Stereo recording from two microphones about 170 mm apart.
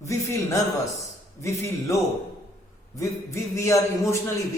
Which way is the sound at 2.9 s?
20° left (ahead or behind).